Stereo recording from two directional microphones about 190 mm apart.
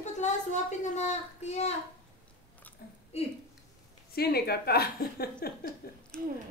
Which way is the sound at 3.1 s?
35° left (ahead or behind).